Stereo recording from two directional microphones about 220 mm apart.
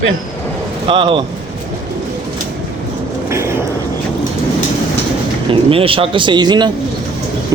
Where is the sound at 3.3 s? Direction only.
10° right (ahead or behind).